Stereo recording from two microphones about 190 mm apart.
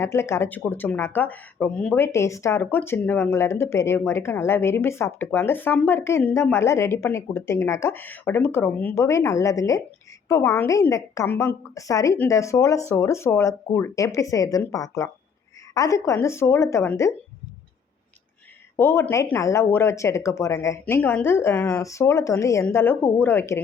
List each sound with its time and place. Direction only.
0.0 s speech: 15° left (ahead or behind)
18.8 s speech: 10° left (ahead or behind)